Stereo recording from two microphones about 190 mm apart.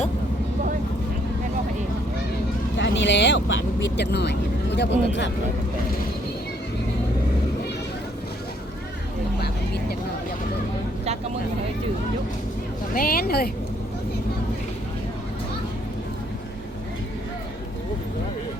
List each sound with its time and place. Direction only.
2.7 s speech: 70° left (ahead or behind)
12.9 s speech: 50° left (ahead or behind)